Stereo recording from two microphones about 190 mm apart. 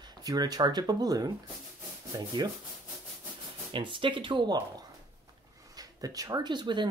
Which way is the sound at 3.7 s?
25° right (ahead or behind).